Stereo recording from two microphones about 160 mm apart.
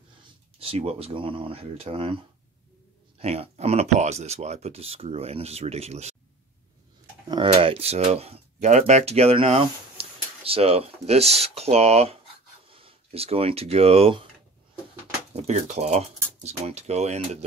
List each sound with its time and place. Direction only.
0.6 s speech: 40° right (ahead or behind)
3.2 s speech: 40° right (ahead or behind)
7.4 s speech: 40° right (ahead or behind)
15.3 s speech: 45° right (ahead or behind)